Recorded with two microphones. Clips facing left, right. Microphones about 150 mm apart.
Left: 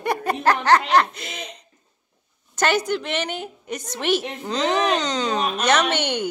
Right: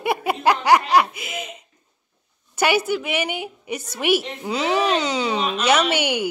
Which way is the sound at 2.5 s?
10° right (ahead or behind).